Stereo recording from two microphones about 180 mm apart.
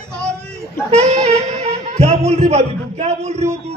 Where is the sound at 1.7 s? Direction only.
35° right (ahead or behind).